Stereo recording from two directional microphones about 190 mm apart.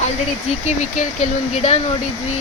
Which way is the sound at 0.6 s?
40° left (ahead or behind).